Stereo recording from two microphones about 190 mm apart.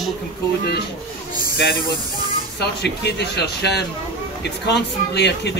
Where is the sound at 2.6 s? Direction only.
60° left (ahead or behind).